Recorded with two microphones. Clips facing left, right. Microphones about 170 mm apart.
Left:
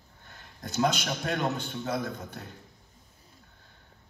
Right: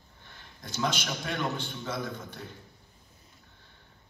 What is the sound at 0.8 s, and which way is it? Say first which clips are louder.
A man's voice: left 4 dB; 45° left (ahead or behind).